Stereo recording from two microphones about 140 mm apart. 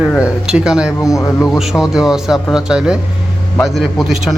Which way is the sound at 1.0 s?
25° left (ahead or behind).